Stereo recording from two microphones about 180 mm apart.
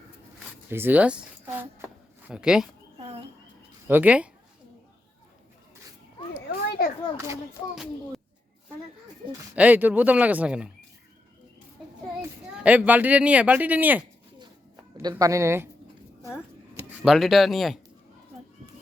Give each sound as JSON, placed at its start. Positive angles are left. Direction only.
{"t": 0.7, "sound": "speech", "side_deg": -10}
{"t": 3.8, "sound": "speech", "side_deg": -10}
{"t": 6.5, "sound": "children playing", "side_deg": 60}
{"t": 9.6, "sound": "speech", "side_deg": -10}
{"t": 12.5, "sound": "speech", "side_deg": -5}
{"t": 17.0, "sound": "speech", "side_deg": 0}